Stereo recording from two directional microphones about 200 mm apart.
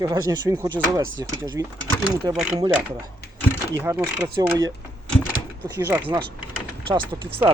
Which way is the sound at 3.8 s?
15° right (ahead or behind).